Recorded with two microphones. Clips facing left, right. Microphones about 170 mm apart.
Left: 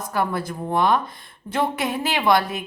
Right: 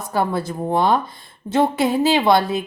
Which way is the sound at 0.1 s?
30° right (ahead or behind).